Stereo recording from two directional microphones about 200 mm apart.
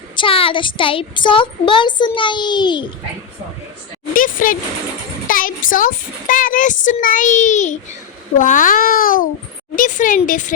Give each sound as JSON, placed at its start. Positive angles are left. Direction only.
{"t": 0.2, "sound": "speech", "side_deg": 25}
{"t": 4.1, "sound": "a sound", "side_deg": 45}
{"t": 5.3, "sound": "a child's voice", "side_deg": 45}